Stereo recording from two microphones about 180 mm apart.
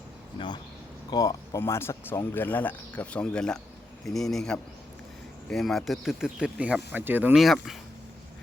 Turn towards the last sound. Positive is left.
turn(degrees=0)  # may be behind; listen again after turning